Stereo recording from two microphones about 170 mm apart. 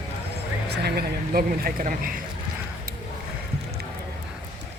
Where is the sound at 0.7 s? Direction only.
70° right (ahead or behind); by 2.2 s 50° right (ahead or behind).